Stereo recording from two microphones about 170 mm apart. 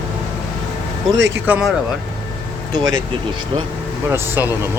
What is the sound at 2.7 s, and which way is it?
Speech, 20° right (ahead or behind).